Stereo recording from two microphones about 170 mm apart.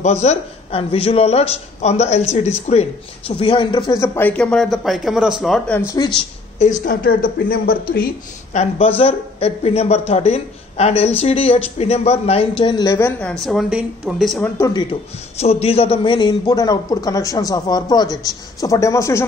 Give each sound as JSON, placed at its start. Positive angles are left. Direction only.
{"t": 0.0, "sound": "a man's voice", "side_deg": 40}
{"t": 5.7, "sound": "a man's voice", "side_deg": 15}
{"t": 6.9, "sound": "a woman's voice", "side_deg": 55}
{"t": 8.5, "sound": "a man's voice", "side_deg": 35}
{"t": 13.3, "sound": "speech", "side_deg": 0}
{"t": 14.4, "sound": "a man's voice", "side_deg": 20}
{"t": 15.4, "sound": "a man's voice", "side_deg": 35}